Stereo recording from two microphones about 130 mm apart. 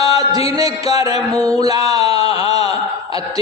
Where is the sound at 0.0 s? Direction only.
30° right (ahead or behind).